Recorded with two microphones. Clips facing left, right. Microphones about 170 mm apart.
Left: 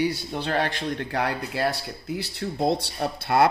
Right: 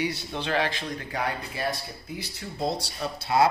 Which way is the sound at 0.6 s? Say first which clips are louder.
Left 4 dB; 60° left (ahead or behind).